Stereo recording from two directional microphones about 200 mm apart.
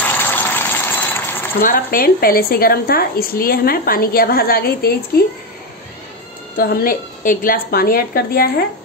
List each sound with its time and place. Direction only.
0.0 s gush: 10° left (ahead or behind)
1.6 s a woman's voice: 45° left (ahead or behind)
6.5 s a woman's voice: 45° left (ahead or behind)